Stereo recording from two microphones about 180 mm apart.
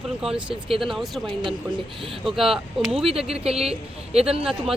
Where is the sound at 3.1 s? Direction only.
35° right (ahead or behind).